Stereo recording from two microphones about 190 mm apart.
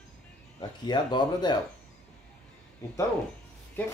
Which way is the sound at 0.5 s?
25° left (ahead or behind).